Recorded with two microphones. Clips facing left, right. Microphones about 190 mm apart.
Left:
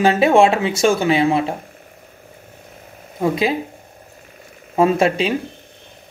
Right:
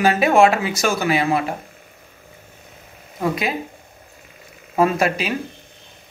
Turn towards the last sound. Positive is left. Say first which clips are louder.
# left 3 dB
turn(degrees=30)  # may be behind; listen again after turning